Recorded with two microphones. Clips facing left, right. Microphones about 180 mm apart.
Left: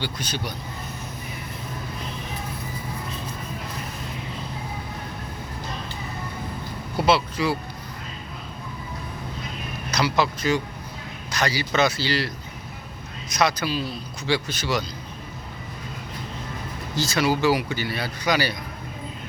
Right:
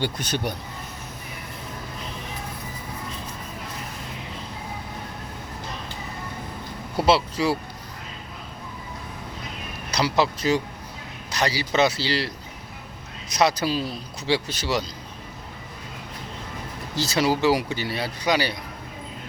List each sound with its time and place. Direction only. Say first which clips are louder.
0.0 s speech: right 4 dB; 55° right (ahead or behind)
7.0 s speech: right 1 dB; 35° right (ahead or behind)
10.0 s speech: right 1 dB; 35° right (ahead or behind)
13.4 s speech: right 2 dB; 35° right (ahead or behind)
17.0 s speech: even; 30° right (ahead or behind)